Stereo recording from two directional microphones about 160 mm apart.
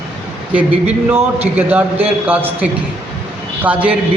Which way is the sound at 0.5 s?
10° right (ahead or behind).